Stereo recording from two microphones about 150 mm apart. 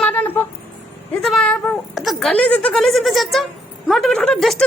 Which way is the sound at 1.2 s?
Centre (ahead or behind).